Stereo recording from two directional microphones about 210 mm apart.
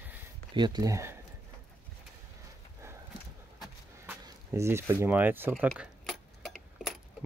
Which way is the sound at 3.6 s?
10° right (ahead or behind).